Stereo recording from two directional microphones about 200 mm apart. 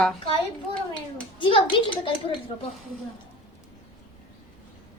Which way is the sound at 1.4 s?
25° left (ahead or behind).